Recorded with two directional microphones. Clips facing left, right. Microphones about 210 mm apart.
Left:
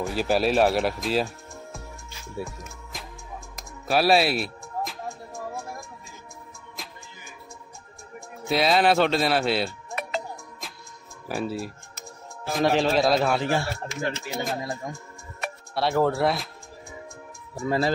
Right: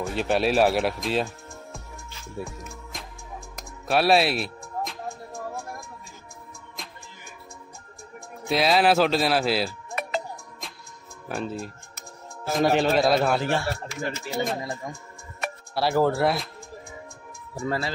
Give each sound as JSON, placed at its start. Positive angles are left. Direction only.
{"t": 0.0, "sound": "speech", "side_deg": 0}
{"t": 3.8, "sound": "music", "side_deg": 0}
{"t": 8.5, "sound": "a man's voice", "side_deg": 0}
{"t": 11.2, "sound": "a man's voice", "side_deg": 5}
{"t": 17.6, "sound": "a man's voice", "side_deg": 0}